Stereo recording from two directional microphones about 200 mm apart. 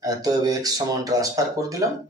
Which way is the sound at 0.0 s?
20° right (ahead or behind).